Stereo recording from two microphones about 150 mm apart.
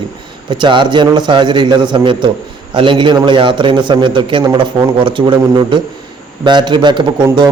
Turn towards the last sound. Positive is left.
turn(degrees=-30)  # may be behind; listen again after turning